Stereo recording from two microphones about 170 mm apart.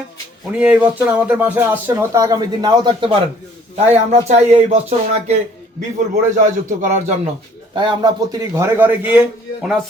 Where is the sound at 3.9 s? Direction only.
40° right (ahead or behind).